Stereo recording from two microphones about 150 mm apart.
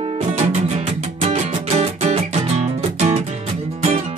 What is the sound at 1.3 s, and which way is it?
Music, 45° right (ahead or behind).